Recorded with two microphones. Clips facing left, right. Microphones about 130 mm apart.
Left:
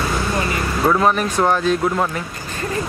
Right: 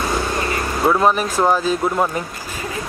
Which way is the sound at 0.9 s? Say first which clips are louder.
Right 1 dB; 5° right (ahead or behind).